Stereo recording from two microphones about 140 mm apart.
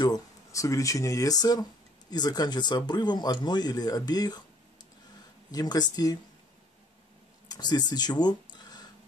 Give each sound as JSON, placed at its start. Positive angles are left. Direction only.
{"t": 0.0, "sound": "speech", "side_deg": 25}
{"t": 5.5, "sound": "speech", "side_deg": 30}
{"t": 7.4, "sound": "speech", "side_deg": 30}